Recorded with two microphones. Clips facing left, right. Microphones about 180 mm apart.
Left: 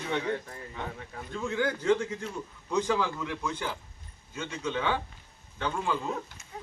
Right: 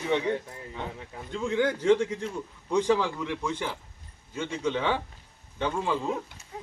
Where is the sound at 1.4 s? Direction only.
25° right (ahead or behind).